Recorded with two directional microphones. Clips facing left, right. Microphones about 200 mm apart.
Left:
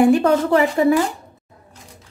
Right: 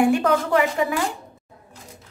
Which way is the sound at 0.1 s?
35° left (ahead or behind).